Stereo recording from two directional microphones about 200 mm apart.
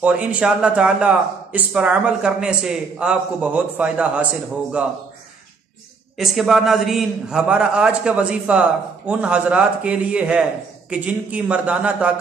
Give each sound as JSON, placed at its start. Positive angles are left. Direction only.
{"t": 0.0, "sound": "speech", "side_deg": -5}
{"t": 6.1, "sound": "a man's voice", "side_deg": 0}